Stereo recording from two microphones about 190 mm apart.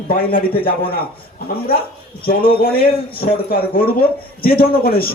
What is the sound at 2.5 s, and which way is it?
A man's voice, 50° left (ahead or behind).